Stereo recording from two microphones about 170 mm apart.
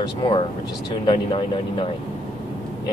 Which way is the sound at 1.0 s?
30° left (ahead or behind).